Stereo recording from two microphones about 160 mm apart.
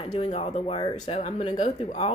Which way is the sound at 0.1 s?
40° left (ahead or behind).